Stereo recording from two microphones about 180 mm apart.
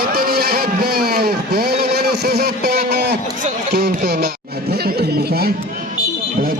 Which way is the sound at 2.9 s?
65° right (ahead or behind).